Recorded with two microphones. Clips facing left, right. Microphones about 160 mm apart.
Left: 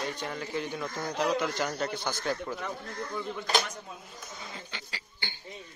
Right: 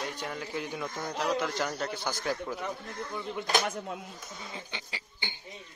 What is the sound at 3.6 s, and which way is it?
Speech, 65° right (ahead or behind).